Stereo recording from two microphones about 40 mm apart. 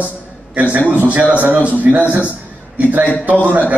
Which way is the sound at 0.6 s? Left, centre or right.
Right.